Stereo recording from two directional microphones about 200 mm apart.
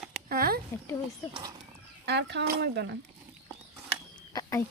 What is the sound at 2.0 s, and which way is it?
Speech, 55° right (ahead or behind).